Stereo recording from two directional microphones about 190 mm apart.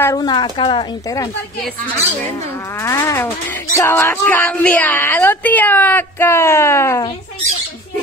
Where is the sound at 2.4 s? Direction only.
15° left (ahead or behind).